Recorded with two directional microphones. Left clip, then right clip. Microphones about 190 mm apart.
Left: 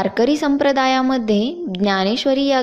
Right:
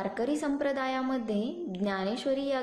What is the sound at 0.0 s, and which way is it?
A woman's voice, 40° left (ahead or behind).